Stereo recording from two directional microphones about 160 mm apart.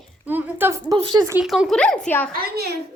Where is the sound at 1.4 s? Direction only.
5° right (ahead or behind).